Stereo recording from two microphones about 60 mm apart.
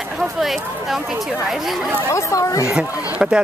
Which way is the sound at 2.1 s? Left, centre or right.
Left.